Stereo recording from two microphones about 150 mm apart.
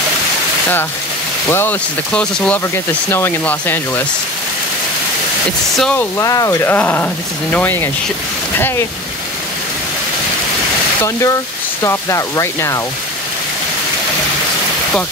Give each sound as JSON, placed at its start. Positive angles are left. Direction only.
{"t": 1.5, "sound": "speech", "side_deg": 15}
{"t": 5.8, "sound": "speech", "side_deg": 10}
{"t": 6.1, "sound": "speech", "side_deg": 20}
{"t": 11.0, "sound": "speech", "side_deg": 20}